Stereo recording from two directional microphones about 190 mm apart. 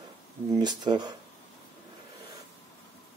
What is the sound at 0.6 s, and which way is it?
Speech, 20° right (ahead or behind).